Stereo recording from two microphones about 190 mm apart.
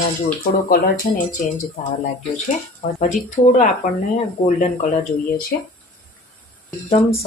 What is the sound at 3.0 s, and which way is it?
Speech, 45° left (ahead or behind).